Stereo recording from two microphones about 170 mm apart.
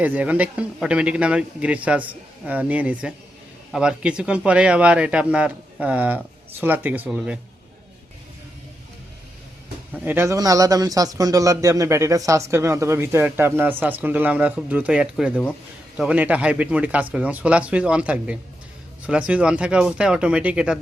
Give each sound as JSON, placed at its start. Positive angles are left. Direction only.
{"t": 0.0, "sound": "a man's voice", "side_deg": -10}
{"t": 9.9, "sound": "a man's voice", "side_deg": -10}